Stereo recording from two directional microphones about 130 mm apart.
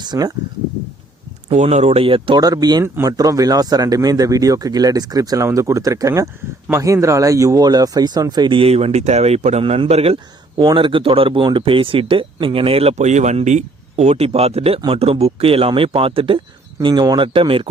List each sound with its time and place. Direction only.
0.0 s speech: 30° right (ahead or behind)
1.5 s speech: 55° right (ahead or behind)
10.6 s speech: 35° right (ahead or behind)
16.8 s speech: 30° right (ahead or behind)